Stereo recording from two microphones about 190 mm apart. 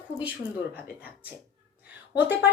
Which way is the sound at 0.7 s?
10° right (ahead or behind).